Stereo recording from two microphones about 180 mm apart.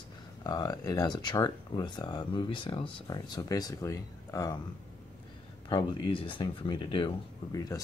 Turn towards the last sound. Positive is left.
turn(degrees=20)  # may be behind; listen again after turning